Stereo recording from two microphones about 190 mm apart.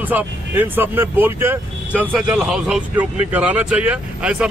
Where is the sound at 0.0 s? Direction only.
10° right (ahead or behind).